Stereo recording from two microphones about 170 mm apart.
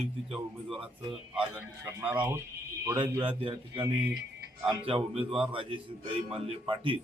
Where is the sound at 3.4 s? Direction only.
30° right (ahead or behind).